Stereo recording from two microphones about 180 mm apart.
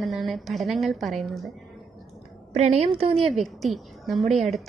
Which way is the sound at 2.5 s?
40° right (ahead or behind).